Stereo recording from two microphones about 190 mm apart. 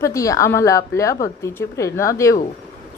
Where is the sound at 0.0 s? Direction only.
15° left (ahead or behind).